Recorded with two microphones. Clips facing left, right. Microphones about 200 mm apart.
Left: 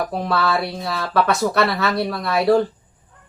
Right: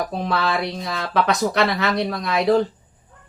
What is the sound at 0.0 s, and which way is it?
Speech, 20° right (ahead or behind).